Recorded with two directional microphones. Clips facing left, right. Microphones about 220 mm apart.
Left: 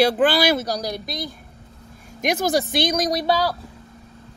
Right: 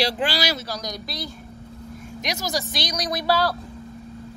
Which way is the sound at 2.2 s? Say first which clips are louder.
Left 8 dB; 55° left (ahead or behind).